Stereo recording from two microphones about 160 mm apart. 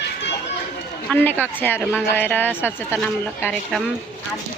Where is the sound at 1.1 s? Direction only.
10° left (ahead or behind).